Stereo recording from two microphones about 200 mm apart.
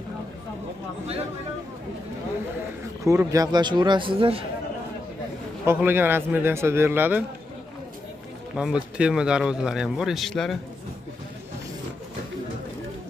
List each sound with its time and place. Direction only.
3.1 s a man's voice: 15° right (ahead or behind)
5.7 s a man's voice: 10° right (ahead or behind)
8.5 s speech: 5° right (ahead or behind)